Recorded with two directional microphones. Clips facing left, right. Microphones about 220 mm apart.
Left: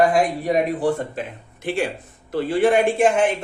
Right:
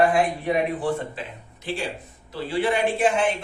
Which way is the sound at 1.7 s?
55° left (ahead or behind).